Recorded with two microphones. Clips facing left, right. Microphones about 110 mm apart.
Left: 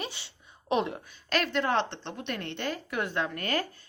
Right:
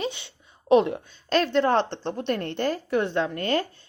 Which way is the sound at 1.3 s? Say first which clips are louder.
Right 6 dB; 35° right (ahead or behind).